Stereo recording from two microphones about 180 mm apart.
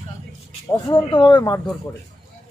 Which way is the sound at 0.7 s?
25° left (ahead or behind).